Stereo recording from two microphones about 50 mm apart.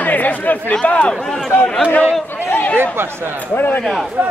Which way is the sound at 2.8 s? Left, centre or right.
Right.